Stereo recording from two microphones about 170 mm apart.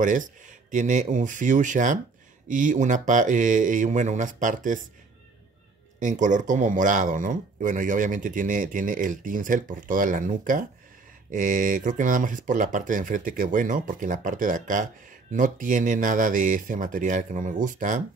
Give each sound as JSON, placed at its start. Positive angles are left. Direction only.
{"t": 0.0, "sound": "speech", "side_deg": -50}
{"t": 5.9, "sound": "speech", "side_deg": -50}